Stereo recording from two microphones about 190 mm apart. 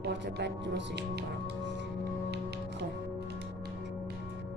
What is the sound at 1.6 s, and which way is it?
Music, 65° right (ahead or behind).